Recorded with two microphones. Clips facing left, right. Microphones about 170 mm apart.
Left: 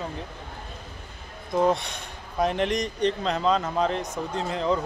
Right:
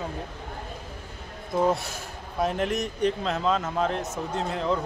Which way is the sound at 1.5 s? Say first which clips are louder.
Left 1 dB; 5° right (ahead or behind).